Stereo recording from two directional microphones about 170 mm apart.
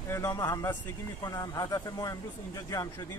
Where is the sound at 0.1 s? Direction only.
20° left (ahead or behind).